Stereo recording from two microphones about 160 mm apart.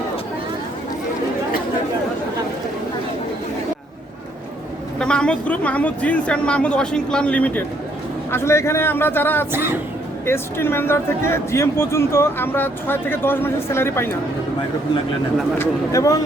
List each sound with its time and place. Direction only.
4.9 s speech: 5° left (ahead or behind)
15.5 s speech: 15° left (ahead or behind)